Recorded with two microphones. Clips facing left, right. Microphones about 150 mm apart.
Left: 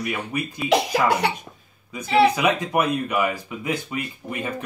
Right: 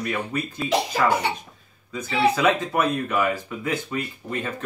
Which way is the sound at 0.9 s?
70° left (ahead or behind).